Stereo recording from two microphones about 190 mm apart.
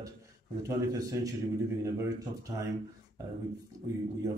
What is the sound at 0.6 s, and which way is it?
A man's voice, 15° right (ahead or behind).